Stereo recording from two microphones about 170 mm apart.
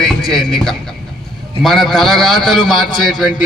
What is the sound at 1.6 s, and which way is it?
A man's voice, centre (ahead or behind).